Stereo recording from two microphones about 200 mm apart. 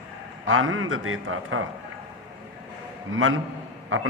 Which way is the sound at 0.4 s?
85° right.